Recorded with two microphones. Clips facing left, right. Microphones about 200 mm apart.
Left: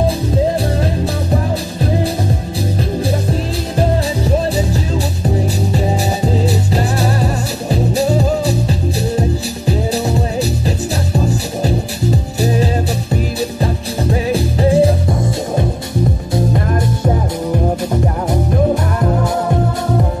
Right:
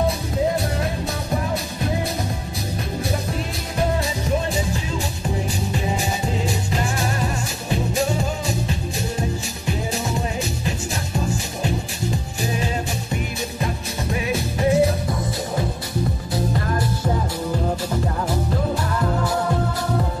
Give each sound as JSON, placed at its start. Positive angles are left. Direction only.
{"t": 3.1, "sound": "music", "side_deg": 30}
{"t": 6.2, "sound": "music", "side_deg": 35}
{"t": 12.4, "sound": "music", "side_deg": 35}